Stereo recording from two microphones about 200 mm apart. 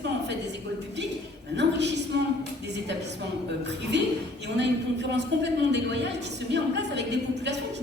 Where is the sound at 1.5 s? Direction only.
60° right (ahead or behind).